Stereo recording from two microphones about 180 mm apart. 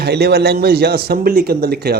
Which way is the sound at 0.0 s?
65° right (ahead or behind).